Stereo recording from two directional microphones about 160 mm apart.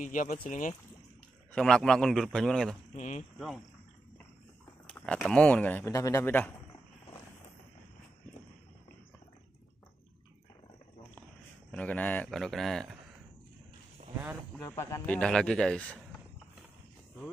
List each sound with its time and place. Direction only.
0.0 s speech: 55° left (ahead or behind)
1.5 s a man's voice: 5° left (ahead or behind)
3.0 s speech: 50° left (ahead or behind)
4.8 s speech: 5° left (ahead or behind)
11.7 s a man's voice: 10° left (ahead or behind)
14.6 s speech: 15° left (ahead or behind)
15.1 s a man's voice: 5° left (ahead or behind)